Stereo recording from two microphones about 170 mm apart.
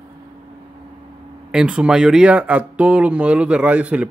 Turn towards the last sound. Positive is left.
turn(degrees=-10)  # may be behind; listen again after turning